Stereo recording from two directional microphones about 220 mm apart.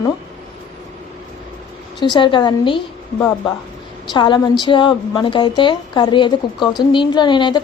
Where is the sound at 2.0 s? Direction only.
20° left (ahead or behind).